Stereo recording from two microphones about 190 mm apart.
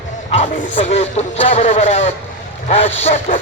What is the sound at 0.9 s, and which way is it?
Speech, 35° left (ahead or behind).